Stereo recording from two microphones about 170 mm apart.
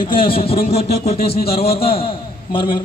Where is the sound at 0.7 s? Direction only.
70° left (ahead or behind).